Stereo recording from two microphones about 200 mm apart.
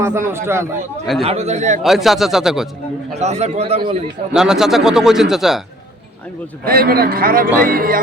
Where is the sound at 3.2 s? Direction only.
35° right (ahead or behind).